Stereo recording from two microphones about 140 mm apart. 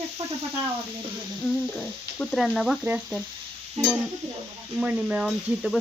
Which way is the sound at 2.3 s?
Centre (ahead or behind).